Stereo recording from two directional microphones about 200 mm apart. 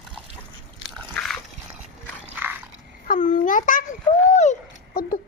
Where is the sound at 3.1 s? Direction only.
40° left (ahead or behind).